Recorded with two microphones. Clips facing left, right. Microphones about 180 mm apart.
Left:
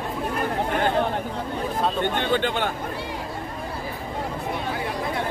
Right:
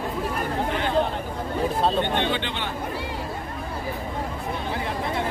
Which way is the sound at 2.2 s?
45° left (ahead or behind).